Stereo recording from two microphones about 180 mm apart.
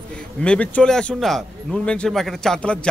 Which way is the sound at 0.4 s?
5° left (ahead or behind).